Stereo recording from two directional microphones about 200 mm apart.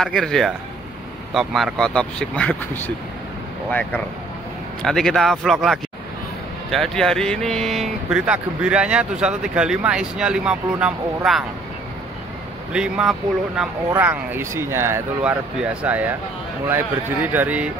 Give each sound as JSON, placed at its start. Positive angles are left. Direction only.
{"t": 0.0, "sound": "speech", "side_deg": 5}
{"t": 4.8, "sound": "speech", "side_deg": 0}
{"t": 12.7, "sound": "speech", "side_deg": -5}